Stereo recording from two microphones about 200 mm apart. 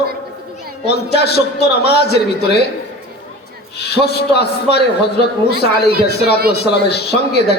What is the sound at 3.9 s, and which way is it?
Speech, 55° left (ahead or behind).